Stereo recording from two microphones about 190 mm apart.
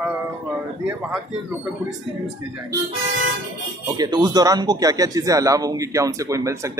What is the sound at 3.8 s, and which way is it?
Speech, 20° right (ahead or behind).